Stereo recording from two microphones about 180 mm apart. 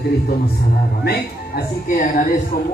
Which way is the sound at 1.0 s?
55° left (ahead or behind).